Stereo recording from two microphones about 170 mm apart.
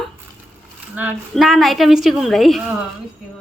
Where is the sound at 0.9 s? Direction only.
10° right (ahead or behind).